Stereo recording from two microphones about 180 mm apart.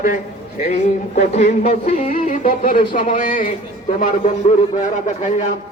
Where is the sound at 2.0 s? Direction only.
50° left (ahead or behind).